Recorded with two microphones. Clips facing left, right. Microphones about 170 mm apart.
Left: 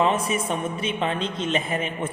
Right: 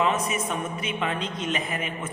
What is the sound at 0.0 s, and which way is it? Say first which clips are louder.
A man's voice: left 3 dB; 30° left (ahead or behind).